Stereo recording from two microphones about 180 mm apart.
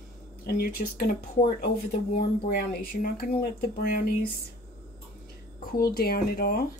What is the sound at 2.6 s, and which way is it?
Speech, 60° left (ahead or behind).